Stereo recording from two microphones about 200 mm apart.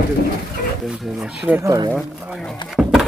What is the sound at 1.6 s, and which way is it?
Speech, 15° right (ahead or behind).